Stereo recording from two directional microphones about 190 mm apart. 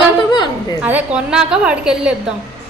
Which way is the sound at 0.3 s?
20° left (ahead or behind).